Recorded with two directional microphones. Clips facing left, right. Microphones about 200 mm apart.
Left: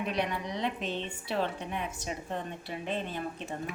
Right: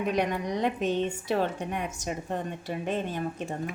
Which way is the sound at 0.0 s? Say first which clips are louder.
Right 5 dB; 45° right (ahead or behind).